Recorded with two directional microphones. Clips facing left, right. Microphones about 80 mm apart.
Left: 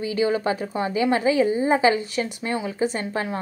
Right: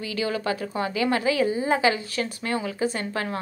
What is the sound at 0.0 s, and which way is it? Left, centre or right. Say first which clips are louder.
A woman's voice: left 5 dB; left.